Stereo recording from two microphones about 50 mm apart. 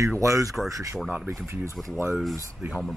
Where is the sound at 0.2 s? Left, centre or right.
Right.